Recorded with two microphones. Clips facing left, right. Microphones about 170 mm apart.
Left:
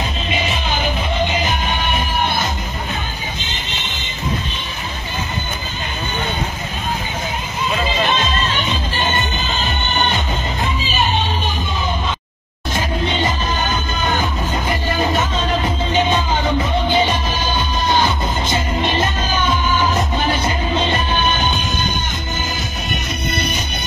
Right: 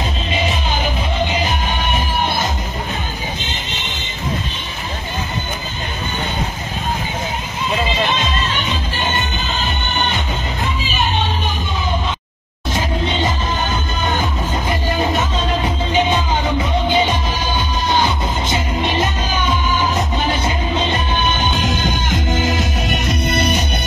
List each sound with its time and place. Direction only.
14.7 s music: centre (ahead or behind)
21.5 s music: 90° right; by 23.6 s 70° right (ahead or behind)